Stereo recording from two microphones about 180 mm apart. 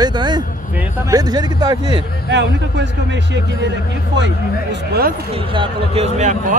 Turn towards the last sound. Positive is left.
turn(degrees=-40)  # may be behind; listen again after turning